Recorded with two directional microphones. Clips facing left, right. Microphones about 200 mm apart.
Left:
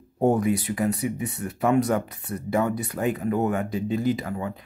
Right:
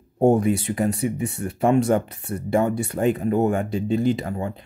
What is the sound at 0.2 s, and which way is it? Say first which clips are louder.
Speech: right 3 dB; 25° right (ahead or behind).